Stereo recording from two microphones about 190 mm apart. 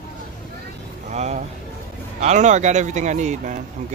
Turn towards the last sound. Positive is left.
turn(degrees=-40)  # may be behind; listen again after turning